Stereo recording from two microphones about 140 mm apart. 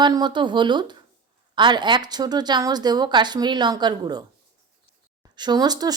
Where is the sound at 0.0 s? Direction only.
30° right (ahead or behind).